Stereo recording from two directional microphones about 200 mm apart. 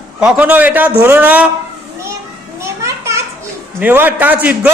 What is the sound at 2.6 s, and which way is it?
Children playing, 15° right (ahead or behind).